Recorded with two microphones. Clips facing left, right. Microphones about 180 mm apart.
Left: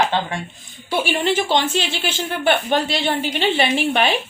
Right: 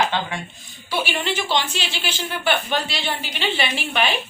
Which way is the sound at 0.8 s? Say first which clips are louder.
Left 5 dB; 45° left (ahead or behind).